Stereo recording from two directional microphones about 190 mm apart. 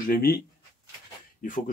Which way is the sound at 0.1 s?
50° left (ahead or behind).